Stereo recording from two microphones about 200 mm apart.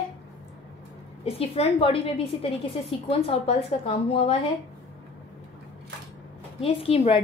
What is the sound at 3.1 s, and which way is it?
A woman's voice, 30° left (ahead or behind).